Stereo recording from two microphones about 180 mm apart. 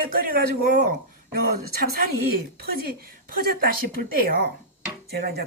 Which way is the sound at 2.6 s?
55° right (ahead or behind).